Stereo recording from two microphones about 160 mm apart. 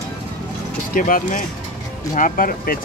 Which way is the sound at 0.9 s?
60° left (ahead or behind).